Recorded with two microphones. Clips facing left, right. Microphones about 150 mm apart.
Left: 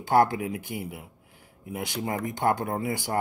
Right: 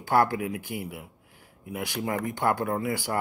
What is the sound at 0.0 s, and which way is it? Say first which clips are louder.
Speech: left 2 dB; 20° left (ahead or behind).